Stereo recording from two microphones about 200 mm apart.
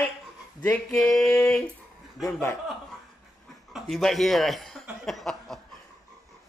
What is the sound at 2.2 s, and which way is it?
Speech, 10° left (ahead or behind).